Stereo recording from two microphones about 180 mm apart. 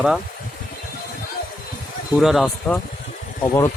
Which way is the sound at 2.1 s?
Centre (ahead or behind).